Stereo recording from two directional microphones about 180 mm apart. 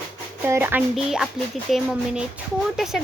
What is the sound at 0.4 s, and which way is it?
Speech, 10° right (ahead or behind).